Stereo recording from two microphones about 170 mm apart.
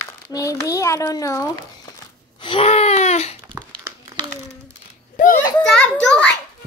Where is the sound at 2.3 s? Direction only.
30° left (ahead or behind).